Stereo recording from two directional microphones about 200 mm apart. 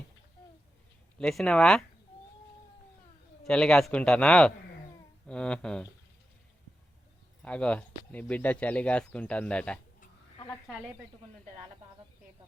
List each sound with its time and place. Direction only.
1.2 s speech: 5° left (ahead or behind)
3.4 s speech: 5° left (ahead or behind)
7.4 s speech: 5° left (ahead or behind)